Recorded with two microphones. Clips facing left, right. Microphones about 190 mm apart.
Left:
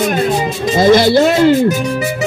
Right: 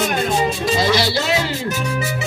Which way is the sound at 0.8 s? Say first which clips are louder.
Left 13 dB; 50° left (ahead or behind).